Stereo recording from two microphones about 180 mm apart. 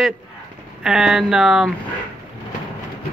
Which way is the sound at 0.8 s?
5° right (ahead or behind).